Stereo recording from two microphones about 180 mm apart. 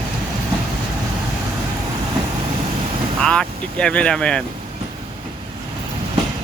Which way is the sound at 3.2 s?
5° left (ahead or behind).